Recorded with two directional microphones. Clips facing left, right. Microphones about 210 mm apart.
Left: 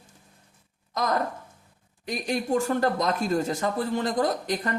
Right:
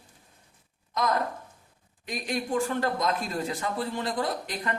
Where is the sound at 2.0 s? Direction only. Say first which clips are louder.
Left 3 dB; 40° left (ahead or behind).